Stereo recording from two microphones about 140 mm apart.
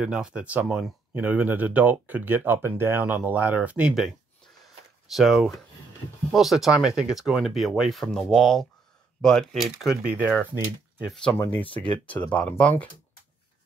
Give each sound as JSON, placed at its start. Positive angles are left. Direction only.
{"t": 0.0, "sound": "speech", "side_deg": -5}
{"t": 5.1, "sound": "speech", "side_deg": 0}
{"t": 11.3, "sound": "speech", "side_deg": 20}
{"t": 11.7, "sound": "speech", "side_deg": 10}